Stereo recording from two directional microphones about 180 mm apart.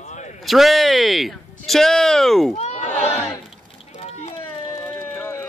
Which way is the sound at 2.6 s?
40° left (ahead or behind).